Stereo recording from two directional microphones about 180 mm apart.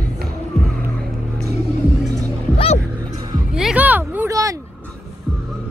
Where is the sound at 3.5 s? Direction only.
5° right (ahead or behind).